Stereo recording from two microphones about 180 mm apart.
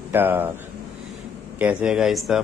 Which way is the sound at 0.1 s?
10° right (ahead or behind).